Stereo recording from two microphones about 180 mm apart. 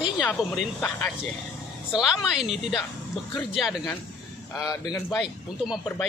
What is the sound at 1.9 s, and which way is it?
A woman's voice, 5° right (ahead or behind).